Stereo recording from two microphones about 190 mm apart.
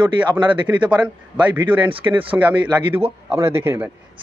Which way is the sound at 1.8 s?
25° right (ahead or behind).